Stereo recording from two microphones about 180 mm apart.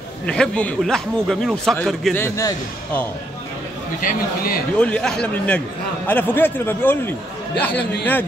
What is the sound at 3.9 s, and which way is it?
Speech, 55° left (ahead or behind).